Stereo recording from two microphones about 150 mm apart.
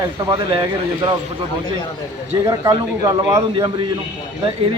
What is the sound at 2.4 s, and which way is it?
A man's voice, 20° right (ahead or behind).